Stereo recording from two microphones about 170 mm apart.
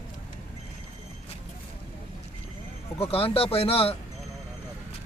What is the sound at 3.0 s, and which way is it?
Speech, 35° left (ahead or behind).